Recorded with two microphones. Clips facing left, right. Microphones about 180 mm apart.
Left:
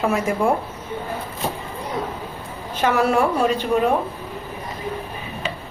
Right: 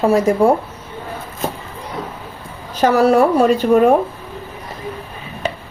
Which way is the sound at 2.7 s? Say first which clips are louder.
Right 6 dB; 40° right (ahead or behind).